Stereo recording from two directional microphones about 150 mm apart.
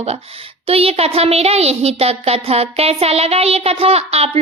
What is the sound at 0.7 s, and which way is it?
A child's voice, 40° right (ahead or behind).